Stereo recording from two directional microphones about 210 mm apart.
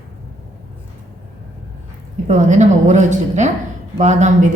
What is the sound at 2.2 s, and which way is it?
A woman's voice, 35° right (ahead or behind).